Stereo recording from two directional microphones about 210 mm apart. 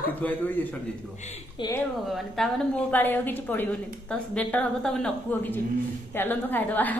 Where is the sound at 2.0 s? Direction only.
Centre (ahead or behind).